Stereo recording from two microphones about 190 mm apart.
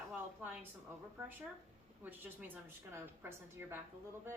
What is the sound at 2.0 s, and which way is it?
A woman's voice, 10° right (ahead or behind).